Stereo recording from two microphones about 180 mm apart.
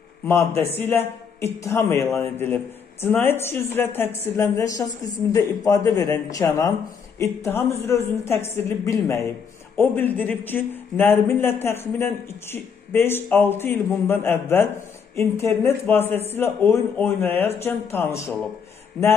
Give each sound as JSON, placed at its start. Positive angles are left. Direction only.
{"t": 0.6, "sound": "a man's voice", "side_deg": -35}
{"t": 0.8, "sound": "a man's voice", "side_deg": 15}